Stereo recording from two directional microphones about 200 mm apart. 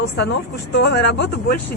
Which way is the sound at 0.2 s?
60° left (ahead or behind).